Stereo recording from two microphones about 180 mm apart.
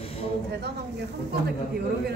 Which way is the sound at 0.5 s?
65° right (ahead or behind).